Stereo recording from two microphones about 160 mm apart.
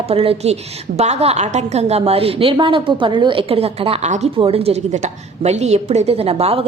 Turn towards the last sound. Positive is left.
turn(degrees=-40)  # may be behind; listen again after turning